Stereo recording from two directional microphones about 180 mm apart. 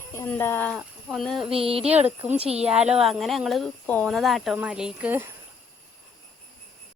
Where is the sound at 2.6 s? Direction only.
5° right (ahead or behind).